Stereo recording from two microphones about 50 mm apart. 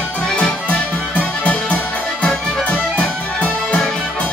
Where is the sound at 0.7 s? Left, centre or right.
Left.